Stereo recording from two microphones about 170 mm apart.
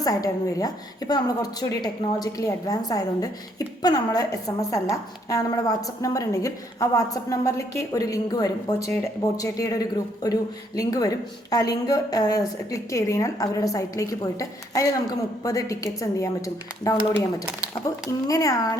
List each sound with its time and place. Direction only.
0.0 s a woman's voice: 20° left (ahead or behind)
17.2 s speech: 5° right (ahead or behind)
18.3 s a woman's voice: 20° left (ahead or behind)